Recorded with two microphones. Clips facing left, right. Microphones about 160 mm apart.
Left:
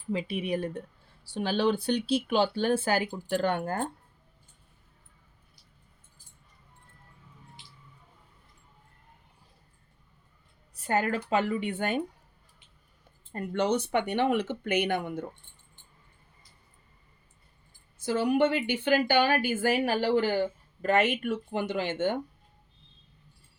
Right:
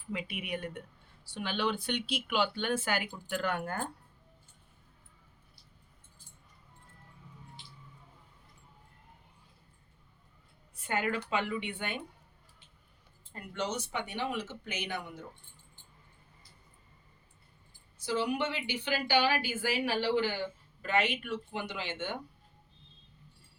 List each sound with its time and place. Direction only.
0.1 s speech: 30° left (ahead or behind)
10.8 s speech: 40° left (ahead or behind)
13.3 s speech: 55° left (ahead or behind)
18.0 s speech: 50° left (ahead or behind)